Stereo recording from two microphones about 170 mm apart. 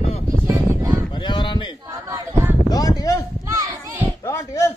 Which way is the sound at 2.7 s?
20° left (ahead or behind).